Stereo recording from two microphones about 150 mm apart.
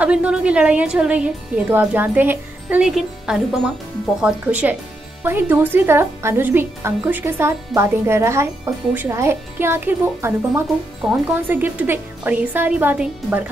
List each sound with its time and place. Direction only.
0.0 s speech: 5° right (ahead or behind)